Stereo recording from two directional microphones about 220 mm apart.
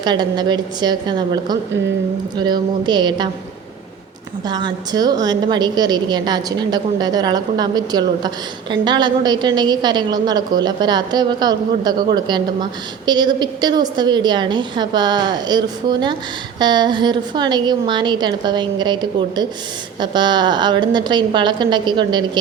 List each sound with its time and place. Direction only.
0.0 s a woman's voice: 20° right (ahead or behind)
4.4 s a woman's voice: 20° right (ahead or behind)
20.0 s a woman's voice: 20° right (ahead or behind)